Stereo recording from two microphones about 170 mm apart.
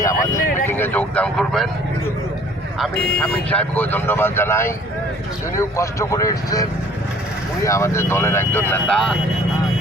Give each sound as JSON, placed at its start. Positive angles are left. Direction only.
{"t": 0.0, "sound": "vehicle", "side_deg": 20}
{"t": 0.7, "sound": "speech", "side_deg": 10}
{"t": 3.2, "sound": "speech", "side_deg": 10}